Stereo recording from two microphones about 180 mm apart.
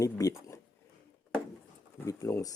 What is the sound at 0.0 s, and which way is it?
Speech, 20° left (ahead or behind).